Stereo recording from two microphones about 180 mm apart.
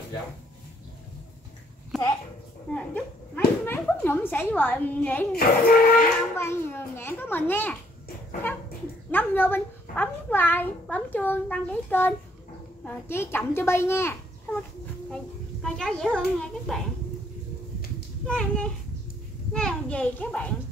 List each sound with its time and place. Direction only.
1.9 s a woman's voice: centre (ahead or behind)
5.3 s speech: 60° left (ahead or behind)
6.3 s a child's voice: 15° left (ahead or behind)
9.1 s a child's voice: 10° left (ahead or behind)
15.6 s a child's voice: 5° left (ahead or behind)
18.2 s a child's voice: 5° left (ahead or behind)